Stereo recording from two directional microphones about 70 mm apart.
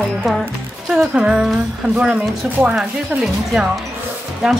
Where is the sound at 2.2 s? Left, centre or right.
Right.